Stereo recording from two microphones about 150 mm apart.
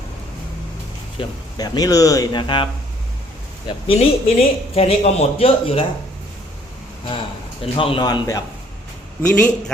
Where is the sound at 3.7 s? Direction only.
35° left (ahead or behind).